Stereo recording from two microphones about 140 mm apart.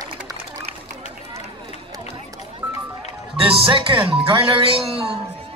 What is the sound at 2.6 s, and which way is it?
Music, 15° right (ahead or behind).